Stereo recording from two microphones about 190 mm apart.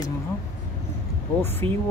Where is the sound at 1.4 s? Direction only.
10° left (ahead or behind).